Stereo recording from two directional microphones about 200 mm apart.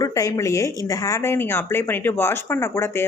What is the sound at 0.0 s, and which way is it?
Speech, 15° left (ahead or behind).